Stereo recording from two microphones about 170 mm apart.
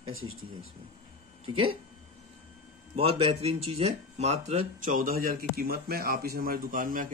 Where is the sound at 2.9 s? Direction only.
35° right (ahead or behind).